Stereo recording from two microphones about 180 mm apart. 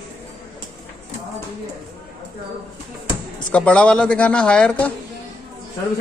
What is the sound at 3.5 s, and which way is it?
Speech, 5° left (ahead or behind).